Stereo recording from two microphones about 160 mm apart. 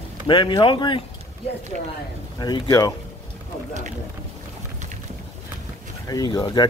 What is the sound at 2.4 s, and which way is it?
Speech, 25° left (ahead or behind).